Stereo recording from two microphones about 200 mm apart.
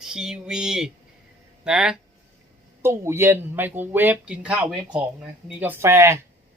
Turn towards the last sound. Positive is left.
turn(degrees=-15)  # may be behind; listen again after turning